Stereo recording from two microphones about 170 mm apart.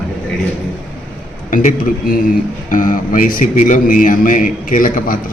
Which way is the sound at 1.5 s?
50° left (ahead or behind).